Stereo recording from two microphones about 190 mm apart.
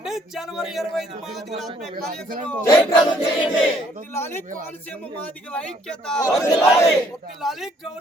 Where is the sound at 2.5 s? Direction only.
15° left (ahead or behind).